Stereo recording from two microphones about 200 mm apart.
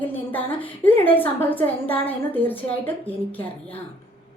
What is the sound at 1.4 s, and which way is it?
A woman's voice, 10° left (ahead or behind).